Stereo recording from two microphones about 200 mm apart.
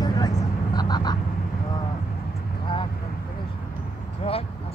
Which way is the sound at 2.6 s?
25° left (ahead or behind).